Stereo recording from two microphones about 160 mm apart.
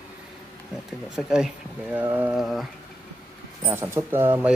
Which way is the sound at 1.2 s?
5° right (ahead or behind).